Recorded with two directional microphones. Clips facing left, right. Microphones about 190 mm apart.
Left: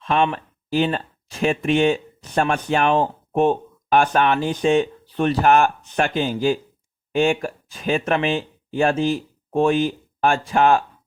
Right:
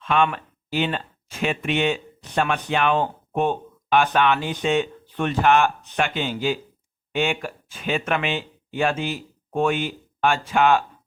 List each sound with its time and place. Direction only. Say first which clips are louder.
0.0 s speech: left 1 dB; 35° left (ahead or behind)